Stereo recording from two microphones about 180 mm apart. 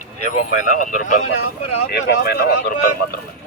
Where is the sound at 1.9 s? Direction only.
60° left (ahead or behind).